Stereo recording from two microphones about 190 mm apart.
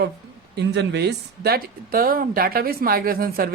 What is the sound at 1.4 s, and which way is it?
Speech, 50° right (ahead or behind).